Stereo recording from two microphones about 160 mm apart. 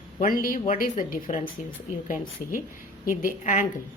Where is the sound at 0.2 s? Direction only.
60° left (ahead or behind).